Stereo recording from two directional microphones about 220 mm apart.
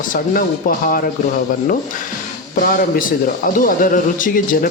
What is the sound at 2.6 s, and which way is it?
Speech, 40° left (ahead or behind).